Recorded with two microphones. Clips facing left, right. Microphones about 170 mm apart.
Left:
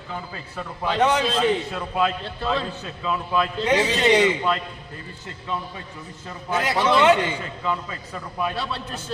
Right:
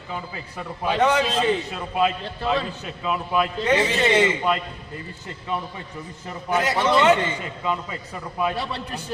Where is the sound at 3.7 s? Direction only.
10° left (ahead or behind).